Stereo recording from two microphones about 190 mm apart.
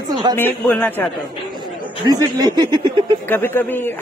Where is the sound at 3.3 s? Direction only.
10° left (ahead or behind).